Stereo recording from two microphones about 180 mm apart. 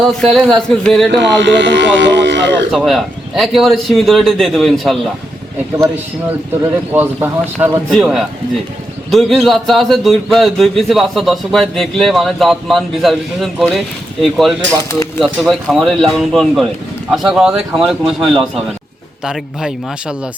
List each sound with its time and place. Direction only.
0.0 s a man's voice: centre (ahead or behind)
1.2 s speech: 80° right
2.7 s a man's voice: centre (ahead or behind)
6.9 s a man's voice: 10° right (ahead or behind)